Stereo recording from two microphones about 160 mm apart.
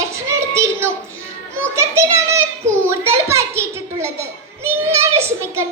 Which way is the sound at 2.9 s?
15° right (ahead or behind).